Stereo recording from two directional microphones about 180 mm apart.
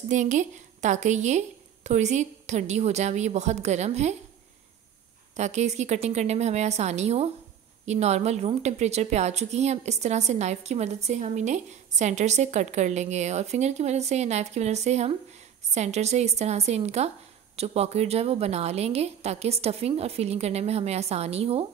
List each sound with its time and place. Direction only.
0.1 s a woman's voice: 45° right (ahead or behind)
5.3 s a woman's voice: 40° right (ahead or behind)